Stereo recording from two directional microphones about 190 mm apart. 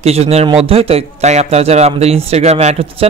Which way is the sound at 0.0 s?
35° right (ahead or behind).